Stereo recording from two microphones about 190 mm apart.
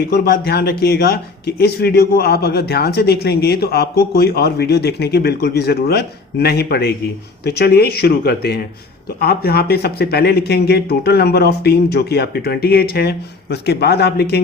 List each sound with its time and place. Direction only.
0.1 s a man's voice: 55° left (ahead or behind)